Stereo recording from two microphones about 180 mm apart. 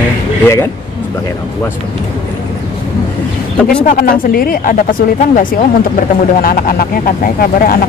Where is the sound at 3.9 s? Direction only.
50° left (ahead or behind).